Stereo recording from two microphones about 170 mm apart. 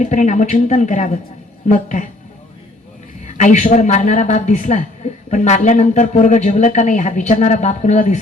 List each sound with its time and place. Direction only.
0.0 s speech: 45° left (ahead or behind)
3.2 s speech: 45° left (ahead or behind)